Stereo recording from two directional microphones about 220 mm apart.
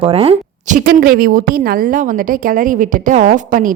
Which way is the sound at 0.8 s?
40° right (ahead or behind).